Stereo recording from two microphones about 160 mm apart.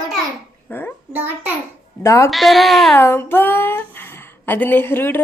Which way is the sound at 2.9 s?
15° left (ahead or behind).